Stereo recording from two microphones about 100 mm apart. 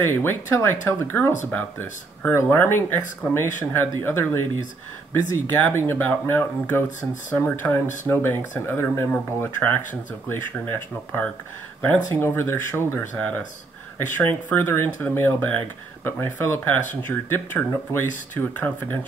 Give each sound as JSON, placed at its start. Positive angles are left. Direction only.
{"t": 0.0, "sound": "speech", "side_deg": 20}
{"t": 14.5, "sound": "speech", "side_deg": 20}